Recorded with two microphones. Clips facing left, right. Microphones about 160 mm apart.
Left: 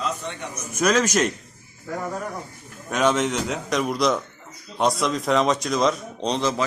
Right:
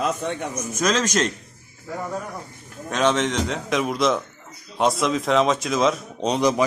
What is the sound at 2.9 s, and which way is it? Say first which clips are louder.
Speech: even; 10° left (ahead or behind).